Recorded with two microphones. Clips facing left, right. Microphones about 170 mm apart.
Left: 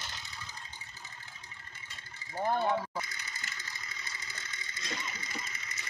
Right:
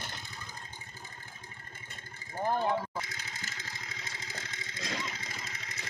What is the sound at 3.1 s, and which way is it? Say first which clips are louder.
Vehicle: right 2 dB; 90° right.